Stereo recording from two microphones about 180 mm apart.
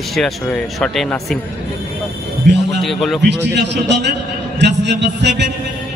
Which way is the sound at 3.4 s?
75° right (ahead or behind).